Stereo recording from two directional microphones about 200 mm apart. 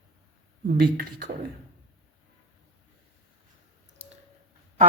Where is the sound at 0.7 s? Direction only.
50° right (ahead or behind).